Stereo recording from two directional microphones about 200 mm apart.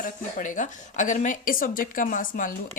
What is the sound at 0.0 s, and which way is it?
A woman's voice, 40° left (ahead or behind).